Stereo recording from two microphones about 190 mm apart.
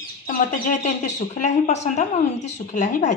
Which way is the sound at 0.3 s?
40° left (ahead or behind).